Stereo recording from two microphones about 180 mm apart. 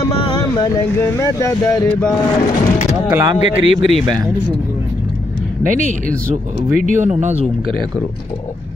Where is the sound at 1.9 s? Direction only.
10° left (ahead or behind).